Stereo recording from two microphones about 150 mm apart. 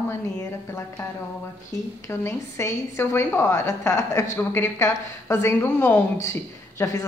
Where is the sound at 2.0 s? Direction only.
20° left (ahead or behind).